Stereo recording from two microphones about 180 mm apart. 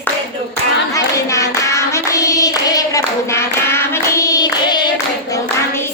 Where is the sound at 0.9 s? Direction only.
15° left (ahead or behind).